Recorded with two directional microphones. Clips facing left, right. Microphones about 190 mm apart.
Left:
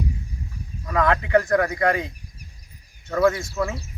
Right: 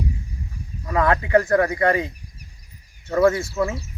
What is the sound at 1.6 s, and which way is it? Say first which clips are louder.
Speech: right 2 dB; 25° right (ahead or behind).